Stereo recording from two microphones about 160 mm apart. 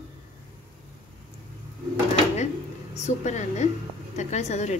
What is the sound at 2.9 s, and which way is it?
Speech, 45° left (ahead or behind).